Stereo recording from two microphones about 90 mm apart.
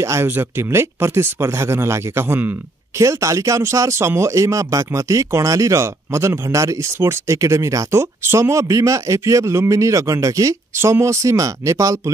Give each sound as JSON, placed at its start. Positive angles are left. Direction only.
{"t": 0.0, "sound": "speech", "side_deg": -30}
{"t": 3.0, "sound": "speech", "side_deg": -35}